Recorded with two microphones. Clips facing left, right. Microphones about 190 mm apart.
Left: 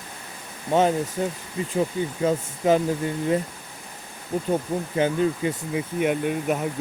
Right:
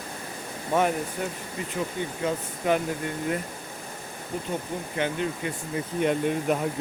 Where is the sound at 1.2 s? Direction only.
25° left (ahead or behind).